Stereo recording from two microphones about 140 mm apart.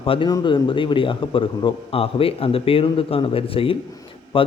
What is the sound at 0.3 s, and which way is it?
A man's voice, 30° left (ahead or behind).